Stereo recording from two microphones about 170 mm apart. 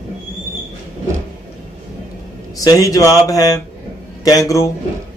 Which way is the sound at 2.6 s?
20° left (ahead or behind).